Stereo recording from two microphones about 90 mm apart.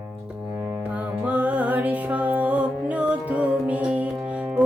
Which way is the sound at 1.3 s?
15° right (ahead or behind).